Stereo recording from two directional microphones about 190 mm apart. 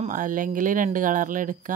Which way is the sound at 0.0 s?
45° right (ahead or behind).